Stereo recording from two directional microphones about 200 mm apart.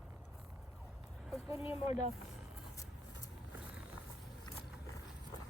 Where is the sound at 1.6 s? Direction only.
30° left (ahead or behind).